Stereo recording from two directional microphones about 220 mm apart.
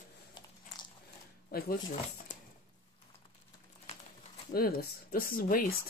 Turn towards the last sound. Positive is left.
turn(degrees=40)  # may be behind; listen again after turning